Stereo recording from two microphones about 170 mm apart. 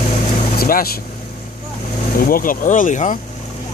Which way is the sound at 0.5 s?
55° left (ahead or behind).